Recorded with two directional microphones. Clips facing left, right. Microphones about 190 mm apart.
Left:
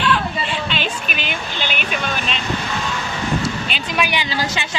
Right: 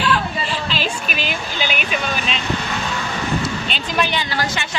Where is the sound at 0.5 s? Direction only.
Centre (ahead or behind).